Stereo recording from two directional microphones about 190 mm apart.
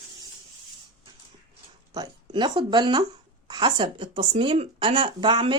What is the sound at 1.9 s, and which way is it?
Speech, 20° right (ahead or behind).